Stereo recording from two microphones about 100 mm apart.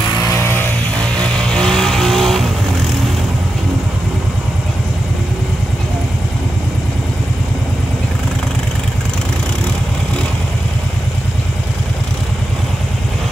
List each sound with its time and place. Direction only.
0.4 s vehicle: 20° left (ahead or behind)
0.9 s vehicle: 10° left (ahead or behind)